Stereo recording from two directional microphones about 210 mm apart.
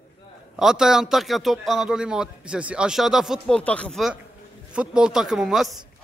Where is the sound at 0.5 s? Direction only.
5° right (ahead or behind).